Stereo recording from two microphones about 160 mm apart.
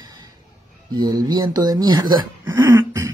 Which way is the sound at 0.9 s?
25° right (ahead or behind).